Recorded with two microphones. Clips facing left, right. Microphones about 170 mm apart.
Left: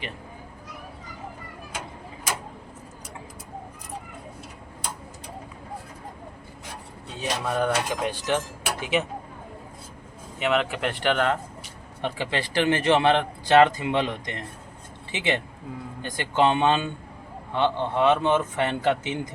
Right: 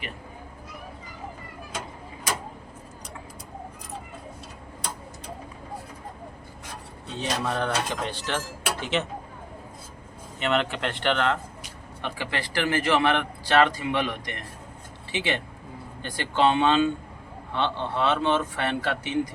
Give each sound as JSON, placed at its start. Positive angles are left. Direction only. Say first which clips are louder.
{"t": 7.2, "sound": "speech", "louder": "left 2 dB", "side_deg": 10}
{"t": 10.4, "sound": "a man's voice", "louder": "left 1 dB", "side_deg": 5}